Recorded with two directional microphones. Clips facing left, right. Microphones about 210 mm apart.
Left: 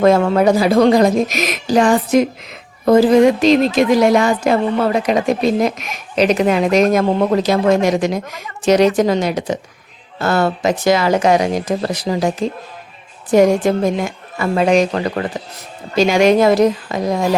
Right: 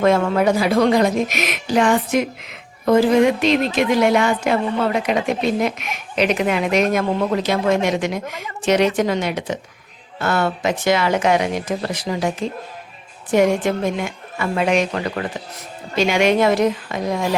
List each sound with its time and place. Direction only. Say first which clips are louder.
0.0 s speech: left 4 dB; 35° left (ahead or behind)